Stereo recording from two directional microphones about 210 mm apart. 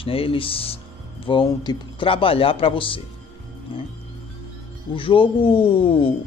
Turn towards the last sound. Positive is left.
turn(degrees=25)  # may be behind; listen again after turning